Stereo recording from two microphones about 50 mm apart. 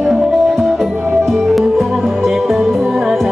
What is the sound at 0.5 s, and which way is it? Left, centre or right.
Music, centre.